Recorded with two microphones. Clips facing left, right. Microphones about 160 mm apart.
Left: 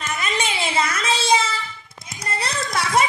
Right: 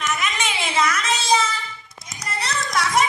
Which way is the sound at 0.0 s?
30° left (ahead or behind).